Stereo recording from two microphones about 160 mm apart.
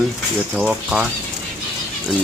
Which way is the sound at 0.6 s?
5° right (ahead or behind).